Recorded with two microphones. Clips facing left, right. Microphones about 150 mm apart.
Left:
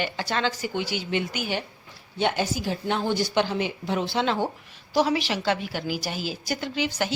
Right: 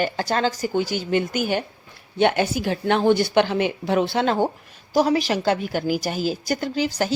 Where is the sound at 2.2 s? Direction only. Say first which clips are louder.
Right 6 dB; 60° right (ahead or behind).